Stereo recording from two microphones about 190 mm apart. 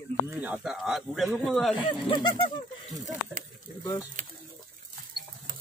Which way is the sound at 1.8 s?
25° left (ahead or behind).